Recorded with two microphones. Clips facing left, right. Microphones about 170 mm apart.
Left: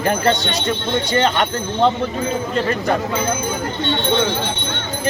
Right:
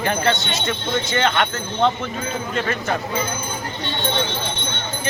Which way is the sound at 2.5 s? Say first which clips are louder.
Left 3 dB; 35° left (ahead or behind).